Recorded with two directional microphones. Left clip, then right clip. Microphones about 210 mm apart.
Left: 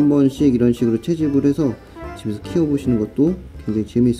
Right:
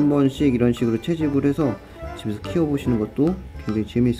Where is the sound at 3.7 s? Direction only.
15° left (ahead or behind).